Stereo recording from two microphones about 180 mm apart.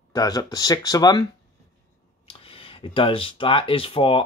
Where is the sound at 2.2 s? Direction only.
30° left (ahead or behind).